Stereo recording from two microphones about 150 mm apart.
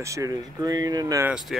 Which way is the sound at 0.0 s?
20° right (ahead or behind).